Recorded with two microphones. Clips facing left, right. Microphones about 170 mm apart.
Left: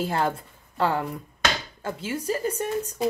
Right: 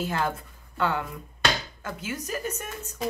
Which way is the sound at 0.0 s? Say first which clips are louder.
Left 3 dB; 35° left (ahead or behind).